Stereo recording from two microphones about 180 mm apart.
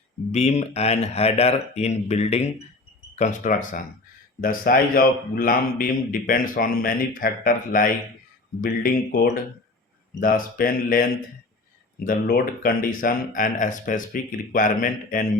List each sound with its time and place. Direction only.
0.3 s a man's voice: 40° left (ahead or behind)